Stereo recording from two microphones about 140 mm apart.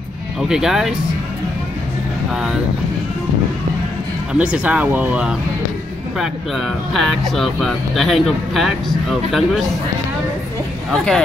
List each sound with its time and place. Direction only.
0.4 s speech: 5° right (ahead or behind)
4.3 s speech: 10° right (ahead or behind)
10.9 s speech: 5° left (ahead or behind)